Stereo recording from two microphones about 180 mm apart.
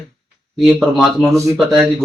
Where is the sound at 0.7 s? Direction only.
Centre (ahead or behind).